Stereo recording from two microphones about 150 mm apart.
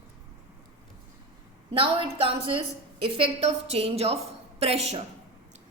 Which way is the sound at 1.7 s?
35° right (ahead or behind).